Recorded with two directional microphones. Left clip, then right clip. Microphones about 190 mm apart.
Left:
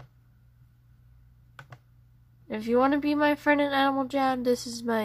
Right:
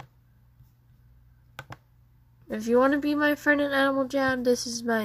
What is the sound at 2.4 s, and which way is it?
Speech, 20° left (ahead or behind).